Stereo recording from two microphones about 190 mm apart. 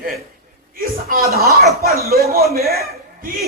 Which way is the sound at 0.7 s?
50° right (ahead or behind).